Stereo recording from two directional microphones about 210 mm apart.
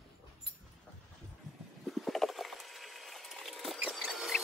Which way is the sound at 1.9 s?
Centre (ahead or behind).